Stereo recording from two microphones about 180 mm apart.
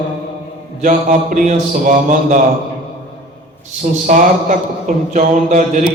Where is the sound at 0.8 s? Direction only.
45° right (ahead or behind).